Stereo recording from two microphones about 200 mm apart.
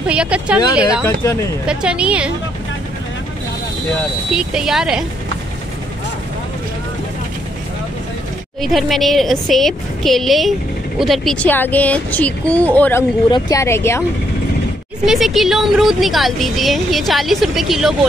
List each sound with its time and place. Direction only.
0.0 s a woman's voice: 5° right (ahead or behind)
1.0 s speech: 15° left (ahead or behind)
1.7 s a woman's voice: 5° right (ahead or behind)
4.4 s a woman's voice: 5° right (ahead or behind)
8.5 s a woman's voice: centre (ahead or behind)
15.0 s a woman's voice: centre (ahead or behind)